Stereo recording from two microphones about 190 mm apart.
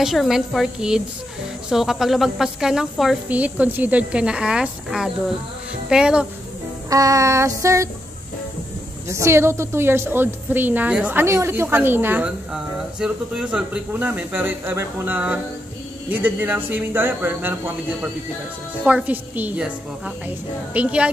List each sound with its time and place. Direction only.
0.0 s speech: centre (ahead or behind)
6.9 s a woman's voice: 15° right (ahead or behind)
9.1 s a woman's voice: 15° right (ahead or behind)
18.9 s a woman's voice: 5° right (ahead or behind)